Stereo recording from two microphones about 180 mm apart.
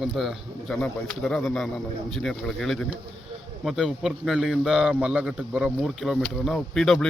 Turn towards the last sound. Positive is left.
turn(degrees=0)  # may be behind; listen again after turning